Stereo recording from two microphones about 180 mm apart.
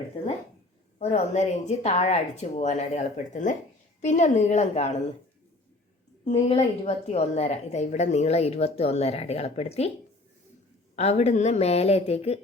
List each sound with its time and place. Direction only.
0.9 s a woman's voice: 40° left (ahead or behind)
6.2 s a woman's voice: 35° left (ahead or behind)
10.9 s a woman's voice: 35° left (ahead or behind)